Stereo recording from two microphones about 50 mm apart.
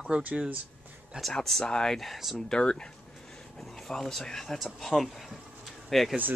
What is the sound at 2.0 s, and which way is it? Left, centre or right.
Speech, centre.